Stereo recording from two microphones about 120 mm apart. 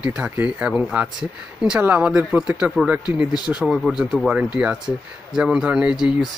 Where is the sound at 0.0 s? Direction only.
10° right (ahead or behind).